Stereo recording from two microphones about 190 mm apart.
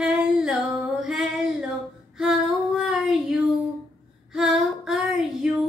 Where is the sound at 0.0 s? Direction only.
5° right (ahead or behind).